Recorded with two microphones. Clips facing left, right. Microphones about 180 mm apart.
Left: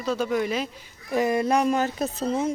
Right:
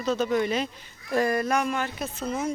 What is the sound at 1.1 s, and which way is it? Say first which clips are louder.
Speech: left 2 dB; 20° left (ahead or behind).